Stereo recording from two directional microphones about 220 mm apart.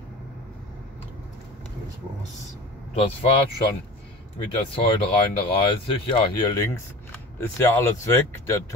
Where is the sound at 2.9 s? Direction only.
25° left (ahead or behind).